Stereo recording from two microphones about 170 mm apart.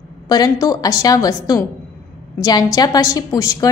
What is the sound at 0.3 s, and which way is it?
A woman's voice, 20° left (ahead or behind).